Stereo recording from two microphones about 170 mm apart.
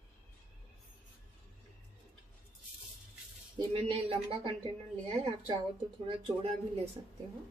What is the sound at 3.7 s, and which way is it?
Speech, 35° right (ahead or behind).